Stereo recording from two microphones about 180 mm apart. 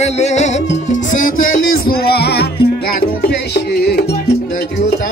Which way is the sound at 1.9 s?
60° left (ahead or behind).